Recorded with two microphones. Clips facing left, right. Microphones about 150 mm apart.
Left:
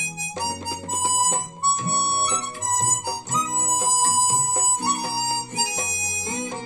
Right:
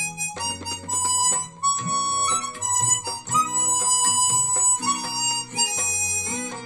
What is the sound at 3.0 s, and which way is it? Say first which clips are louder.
Music: even; 20° left (ahead or behind).